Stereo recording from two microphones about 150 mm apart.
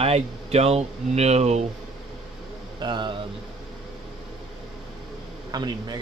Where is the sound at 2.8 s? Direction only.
30° right (ahead or behind).